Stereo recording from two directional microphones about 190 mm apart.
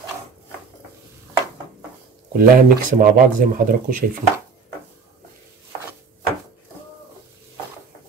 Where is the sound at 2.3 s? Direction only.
50° right (ahead or behind).